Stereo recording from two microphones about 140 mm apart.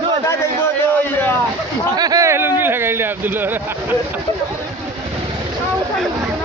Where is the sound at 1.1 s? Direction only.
15° left (ahead or behind).